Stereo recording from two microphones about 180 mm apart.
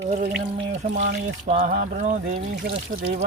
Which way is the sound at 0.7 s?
40° right (ahead or behind).